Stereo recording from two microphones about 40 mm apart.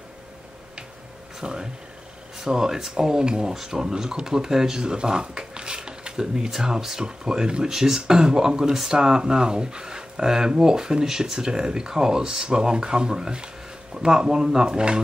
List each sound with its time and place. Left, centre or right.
1.4 s speech: centre